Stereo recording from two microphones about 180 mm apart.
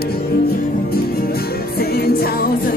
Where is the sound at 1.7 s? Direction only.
60° left (ahead or behind).